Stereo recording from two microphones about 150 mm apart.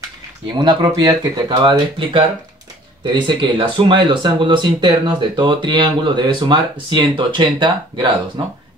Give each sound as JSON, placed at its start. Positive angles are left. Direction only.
{"t": 0.5, "sound": "speech", "side_deg": -30}